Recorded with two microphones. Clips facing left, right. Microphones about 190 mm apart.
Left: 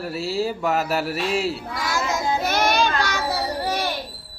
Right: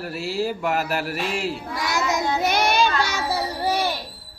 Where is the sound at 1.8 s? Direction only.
20° right (ahead or behind).